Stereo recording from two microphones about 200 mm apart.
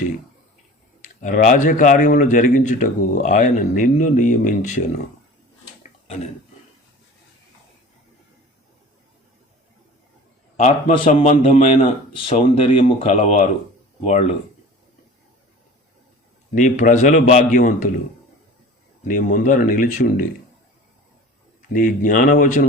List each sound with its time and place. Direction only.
1.0 s speech: 40° left (ahead or behind)
10.6 s a man's voice: 30° left (ahead or behind)
16.6 s speech: 40° left (ahead or behind)
19.0 s speech: 40° left (ahead or behind)
21.7 s speech: 40° left (ahead or behind)